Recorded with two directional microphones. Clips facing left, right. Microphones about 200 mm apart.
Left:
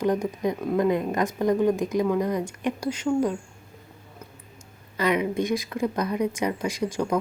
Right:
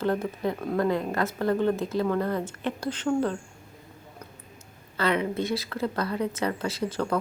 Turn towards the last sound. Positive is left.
turn(degrees=15)  # may be behind; listen again after turning